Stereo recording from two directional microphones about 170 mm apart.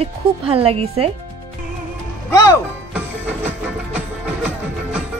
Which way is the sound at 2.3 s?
20° left (ahead or behind).